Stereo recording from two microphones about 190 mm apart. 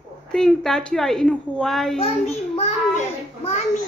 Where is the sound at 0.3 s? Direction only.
5° left (ahead or behind).